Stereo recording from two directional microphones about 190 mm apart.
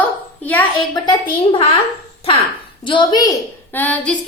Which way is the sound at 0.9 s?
25° left (ahead or behind).